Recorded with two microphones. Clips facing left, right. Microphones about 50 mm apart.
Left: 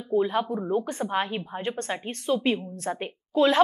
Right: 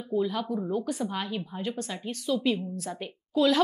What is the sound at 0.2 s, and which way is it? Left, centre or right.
A woman's voice, left.